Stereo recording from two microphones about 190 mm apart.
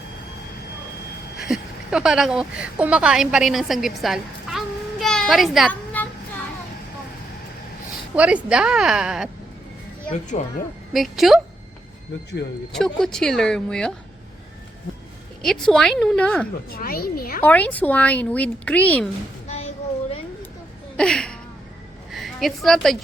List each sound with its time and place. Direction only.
1.4 s speech: centre (ahead or behind)
8.1 s a woman's voice: 5° right (ahead or behind)
10.3 s a woman's voice: 40° left (ahead or behind)
10.9 s a woman's voice: centre (ahead or behind)
12.7 s a woman's voice: centre (ahead or behind)
15.4 s a woman's voice: centre (ahead or behind)
16.6 s speech: 50° left (ahead or behind)
17.4 s speech: 10° left (ahead or behind)
19.5 s a sound: 35° left (ahead or behind)
20.9 s a sound: 5° left (ahead or behind)
22.1 s a woman's voice: centre (ahead or behind)